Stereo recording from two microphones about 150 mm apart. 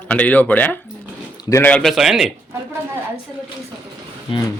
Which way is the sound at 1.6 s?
5° left (ahead or behind).